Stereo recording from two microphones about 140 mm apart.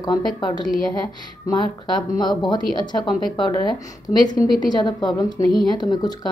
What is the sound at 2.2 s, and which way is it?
A woman's voice, 30° left (ahead or behind).